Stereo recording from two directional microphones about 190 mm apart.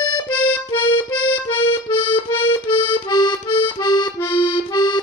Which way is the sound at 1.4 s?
25° left (ahead or behind).